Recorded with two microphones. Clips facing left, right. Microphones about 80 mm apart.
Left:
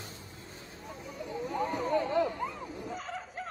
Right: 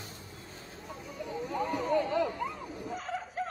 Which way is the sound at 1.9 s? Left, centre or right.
Left.